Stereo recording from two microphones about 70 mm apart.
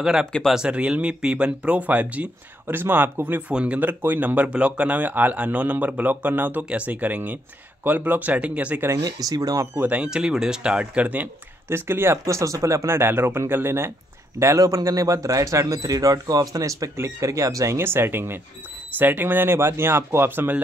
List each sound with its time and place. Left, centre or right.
0.0 s speech: centre
9.0 s speech: right
9.8 s speech: centre
11.7 s speech: right
14.8 s speech: right
17.7 s speech: right